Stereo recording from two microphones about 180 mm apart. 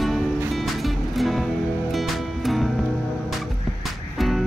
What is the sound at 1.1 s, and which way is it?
Music, centre (ahead or behind).